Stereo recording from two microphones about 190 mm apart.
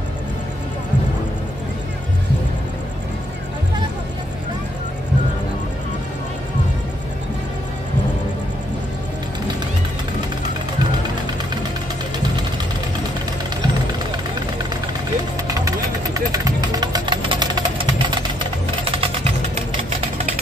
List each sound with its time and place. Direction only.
15.4 s vehicle: 15° right (ahead or behind)
18.9 s music: 30° right (ahead or behind)